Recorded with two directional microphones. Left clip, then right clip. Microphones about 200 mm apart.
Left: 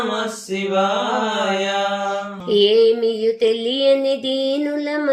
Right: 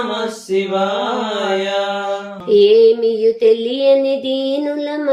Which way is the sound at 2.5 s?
20° left (ahead or behind).